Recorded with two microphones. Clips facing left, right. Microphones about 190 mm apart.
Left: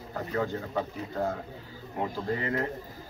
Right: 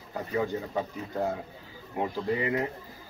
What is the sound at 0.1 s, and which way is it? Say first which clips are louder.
Speech: right 1 dB; 15° right (ahead or behind).